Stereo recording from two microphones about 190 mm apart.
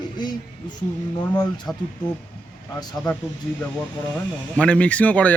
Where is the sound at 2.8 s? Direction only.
20° left (ahead or behind).